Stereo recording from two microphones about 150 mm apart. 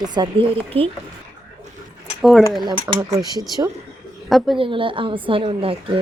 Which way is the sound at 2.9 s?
15° right (ahead or behind).